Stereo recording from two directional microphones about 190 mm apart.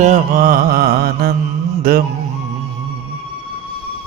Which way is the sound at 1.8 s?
50° right (ahead or behind).